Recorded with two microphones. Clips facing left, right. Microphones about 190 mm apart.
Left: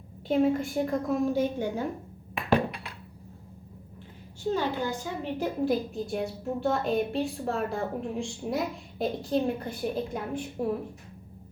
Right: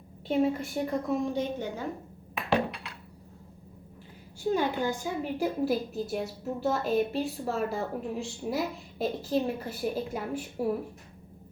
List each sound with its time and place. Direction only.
0.3 s a woman's voice: centre (ahead or behind)
2.5 s ping: 50° left (ahead or behind)
4.5 s a woman's voice: 15° right (ahead or behind)